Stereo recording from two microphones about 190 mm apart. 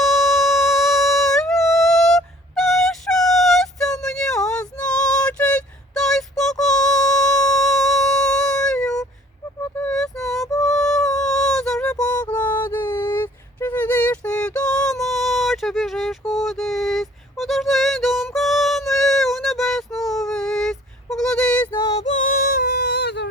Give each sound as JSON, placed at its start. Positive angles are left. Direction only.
{"t": 0.0, "sound": "music", "side_deg": 0}
{"t": 4.0, "sound": "a sound", "side_deg": 5}
{"t": 10.7, "sound": "music", "side_deg": 5}
{"t": 20.0, "sound": "female singing", "side_deg": 0}
{"t": 21.9, "sound": "female singing", "side_deg": 40}